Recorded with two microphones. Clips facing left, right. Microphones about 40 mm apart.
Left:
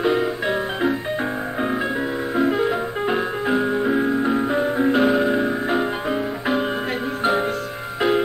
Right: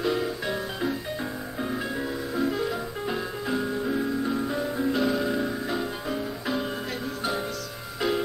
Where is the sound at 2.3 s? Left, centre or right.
Left.